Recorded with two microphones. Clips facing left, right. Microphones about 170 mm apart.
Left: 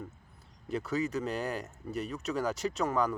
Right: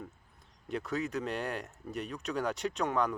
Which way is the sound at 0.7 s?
Centre (ahead or behind).